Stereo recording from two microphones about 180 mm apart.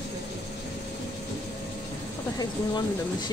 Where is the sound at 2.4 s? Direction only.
25° left (ahead or behind).